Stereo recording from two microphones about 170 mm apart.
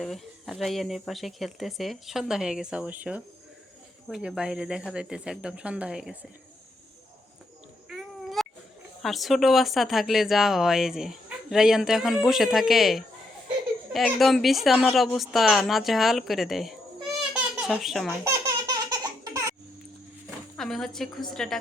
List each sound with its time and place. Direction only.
0.0 s a woman's voice: centre (ahead or behind)
7.9 s a sound: centre (ahead or behind)
9.0 s a woman's voice: centre (ahead or behind)
18.3 s laughter: 20° right (ahead or behind)
20.6 s a woman's voice: centre (ahead or behind)